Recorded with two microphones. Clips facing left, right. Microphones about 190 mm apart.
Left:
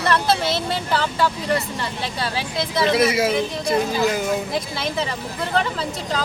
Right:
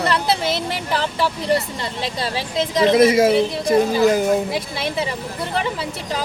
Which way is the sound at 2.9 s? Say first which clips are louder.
Right 6 dB; 50° right (ahead or behind).